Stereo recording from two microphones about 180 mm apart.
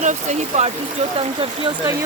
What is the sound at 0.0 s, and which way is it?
Speech, 40° right (ahead or behind).